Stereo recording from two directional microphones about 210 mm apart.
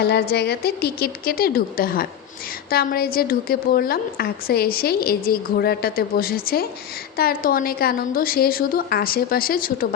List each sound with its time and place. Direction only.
0.0 s a woman's voice: 50° left (ahead or behind)